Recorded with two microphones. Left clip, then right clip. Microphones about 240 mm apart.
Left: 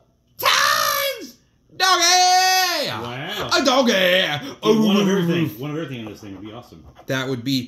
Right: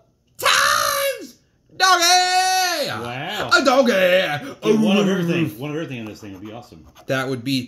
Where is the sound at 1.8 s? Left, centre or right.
Centre.